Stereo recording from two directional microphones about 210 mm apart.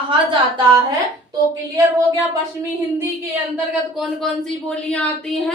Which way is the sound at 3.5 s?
5° right (ahead or behind).